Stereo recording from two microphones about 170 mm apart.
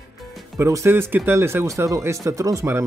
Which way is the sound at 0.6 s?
15° right (ahead or behind).